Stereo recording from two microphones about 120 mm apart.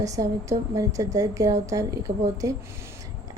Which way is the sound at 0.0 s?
25° right (ahead or behind).